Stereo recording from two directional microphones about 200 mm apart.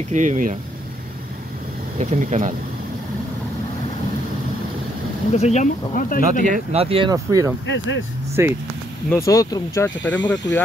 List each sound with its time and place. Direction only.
0.1 s speech: 40° right (ahead or behind)
2.0 s speech: 35° right (ahead or behind)
5.3 s speech: 35° left (ahead or behind)
6.5 s speech: 30° right (ahead or behind)
7.6 s speech: 70° left (ahead or behind)
8.4 s speech: 15° right (ahead or behind)
9.1 s speech: 15° left (ahead or behind)